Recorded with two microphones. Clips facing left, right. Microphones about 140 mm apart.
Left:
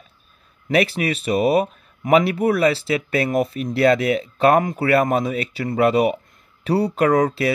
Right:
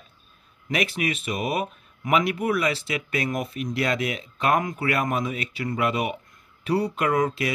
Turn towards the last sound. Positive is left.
turn(degrees=35)  # may be behind; listen again after turning